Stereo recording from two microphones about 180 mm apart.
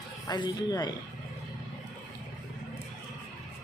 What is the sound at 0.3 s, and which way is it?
Speech, 25° left (ahead or behind).